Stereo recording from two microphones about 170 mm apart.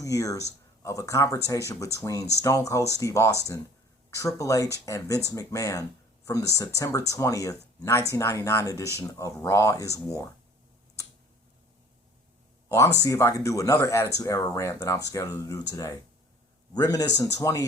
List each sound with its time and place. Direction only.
0.0 s speech: 20° left (ahead or behind)
12.6 s speech: 15° left (ahead or behind)